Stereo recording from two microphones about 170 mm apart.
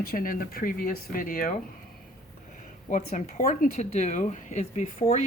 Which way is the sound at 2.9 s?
45° left (ahead or behind).